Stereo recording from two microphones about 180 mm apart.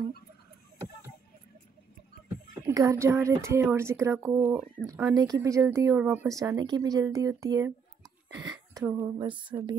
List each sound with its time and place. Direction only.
2.6 s speech: 15° right (ahead or behind)
4.8 s speech: 50° right (ahead or behind)
5.1 s speech: 20° right (ahead or behind)
8.0 s a sound: 5° right (ahead or behind)
8.7 s speech: 15° right (ahead or behind)